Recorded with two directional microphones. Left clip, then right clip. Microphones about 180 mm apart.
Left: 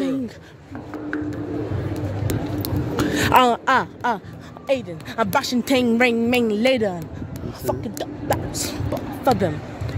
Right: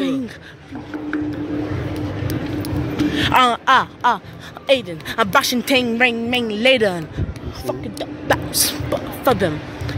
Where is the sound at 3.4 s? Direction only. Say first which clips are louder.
Right 3 dB; 25° left (ahead or behind).